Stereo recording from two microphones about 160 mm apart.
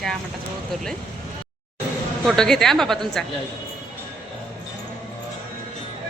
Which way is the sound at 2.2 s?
5° left (ahead or behind).